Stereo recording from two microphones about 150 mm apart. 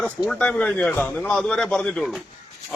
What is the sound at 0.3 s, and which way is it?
A man's voice, 5° left (ahead or behind).